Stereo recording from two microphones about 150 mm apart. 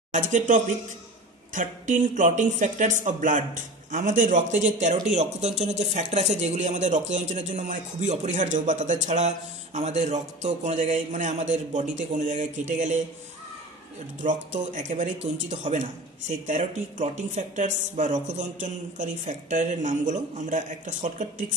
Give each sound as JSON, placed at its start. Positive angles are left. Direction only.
{"t": 0.1, "sound": "speech", "side_deg": -55}
{"t": 14.2, "sound": "speech", "side_deg": -55}